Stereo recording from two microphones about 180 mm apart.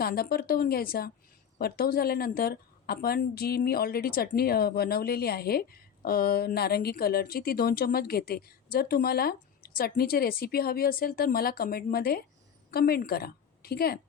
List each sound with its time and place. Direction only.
0.0 s a woman's voice: 60° left (ahead or behind)